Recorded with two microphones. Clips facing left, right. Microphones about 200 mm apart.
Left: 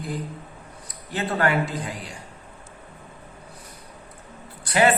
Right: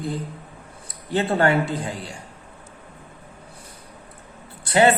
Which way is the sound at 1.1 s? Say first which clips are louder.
Right 4 dB; 30° right (ahead or behind).